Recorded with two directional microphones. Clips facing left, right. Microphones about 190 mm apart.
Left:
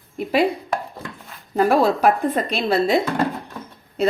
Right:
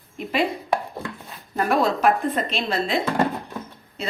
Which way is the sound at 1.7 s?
35° left (ahead or behind).